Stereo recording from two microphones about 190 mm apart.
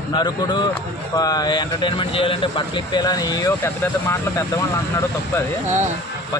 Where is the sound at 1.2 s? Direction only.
20° left (ahead or behind).